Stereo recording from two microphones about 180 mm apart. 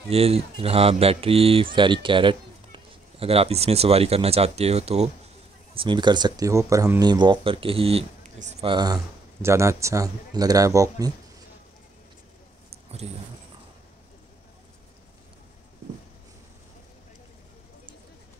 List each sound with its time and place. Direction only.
0.1 s speech: 35° right (ahead or behind)
8.6 s speech: 25° right (ahead or behind)
13.0 s speech: 35° right (ahead or behind)